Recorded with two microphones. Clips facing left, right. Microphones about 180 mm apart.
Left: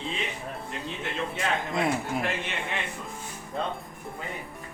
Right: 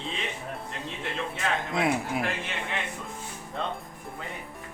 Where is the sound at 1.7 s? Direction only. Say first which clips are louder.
Even; centre (ahead or behind).